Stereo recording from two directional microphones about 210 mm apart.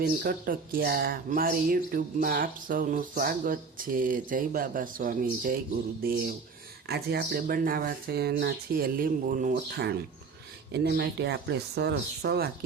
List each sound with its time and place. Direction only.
0.0 s speech: 45° right (ahead or behind)